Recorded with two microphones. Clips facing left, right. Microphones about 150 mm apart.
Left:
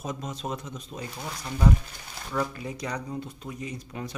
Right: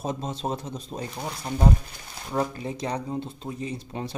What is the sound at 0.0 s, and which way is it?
Speech, 30° right (ahead or behind).